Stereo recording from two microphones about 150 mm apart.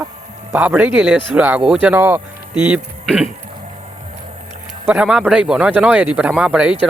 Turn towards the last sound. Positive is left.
turn(degrees=-5)  # may be behind; listen again after turning